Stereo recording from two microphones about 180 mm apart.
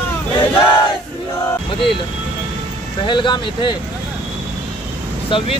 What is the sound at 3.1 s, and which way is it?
Speech, 25° left (ahead or behind).